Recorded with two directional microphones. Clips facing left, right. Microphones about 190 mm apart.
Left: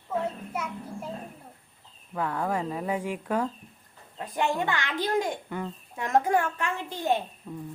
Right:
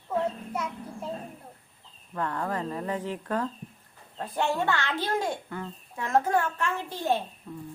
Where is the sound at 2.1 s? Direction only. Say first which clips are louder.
Left 2 dB; 5° left (ahead or behind).